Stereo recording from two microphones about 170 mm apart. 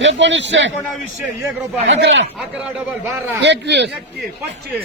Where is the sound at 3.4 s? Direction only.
90° right.